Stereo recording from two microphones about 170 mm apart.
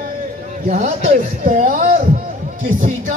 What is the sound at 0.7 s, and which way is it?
A man's voice, 40° right (ahead or behind).